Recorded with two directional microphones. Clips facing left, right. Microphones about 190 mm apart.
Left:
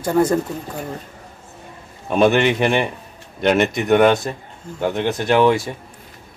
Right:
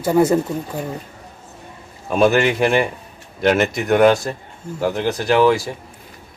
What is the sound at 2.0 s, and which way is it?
Speech, centre (ahead or behind).